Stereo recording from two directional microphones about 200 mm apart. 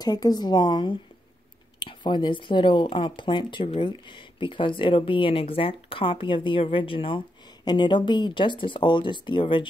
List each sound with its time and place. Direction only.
0.0 s speech: 20° left (ahead or behind)